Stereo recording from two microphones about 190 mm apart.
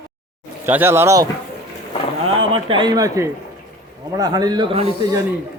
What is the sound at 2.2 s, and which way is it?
Speech, 25° right (ahead or behind).